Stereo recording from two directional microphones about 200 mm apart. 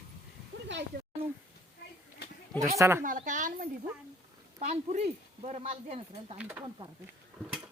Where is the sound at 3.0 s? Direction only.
40° right (ahead or behind).